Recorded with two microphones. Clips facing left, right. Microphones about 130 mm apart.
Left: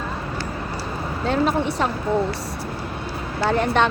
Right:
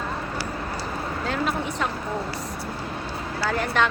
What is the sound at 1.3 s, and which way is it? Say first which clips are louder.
Speech: left 8 dB; 30° left (ahead or behind).